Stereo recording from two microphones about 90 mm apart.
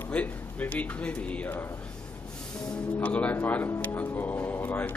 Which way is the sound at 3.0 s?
15° left (ahead or behind).